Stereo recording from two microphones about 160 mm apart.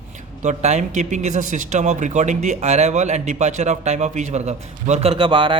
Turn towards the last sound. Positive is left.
turn(degrees=-30)  # may be behind; listen again after turning